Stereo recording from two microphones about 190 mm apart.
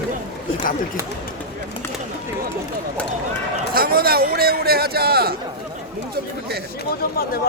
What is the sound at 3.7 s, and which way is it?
Speech, 50° right (ahead or behind).